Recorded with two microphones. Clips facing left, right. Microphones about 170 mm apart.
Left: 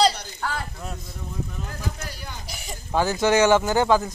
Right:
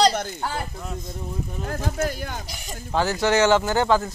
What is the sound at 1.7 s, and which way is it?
Speech, 50° right (ahead or behind).